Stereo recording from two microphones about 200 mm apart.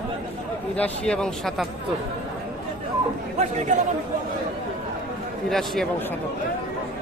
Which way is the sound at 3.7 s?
40° right (ahead or behind).